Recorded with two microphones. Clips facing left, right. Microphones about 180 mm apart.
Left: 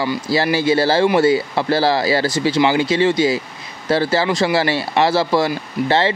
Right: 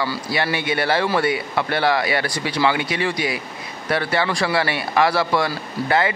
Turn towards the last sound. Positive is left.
turn(degrees=25)  # may be behind; listen again after turning